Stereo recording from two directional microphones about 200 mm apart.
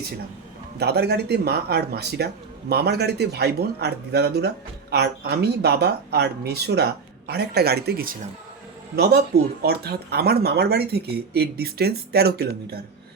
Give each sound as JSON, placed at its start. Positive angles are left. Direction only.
{"t": 0.8, "sound": "a man's voice", "side_deg": -55}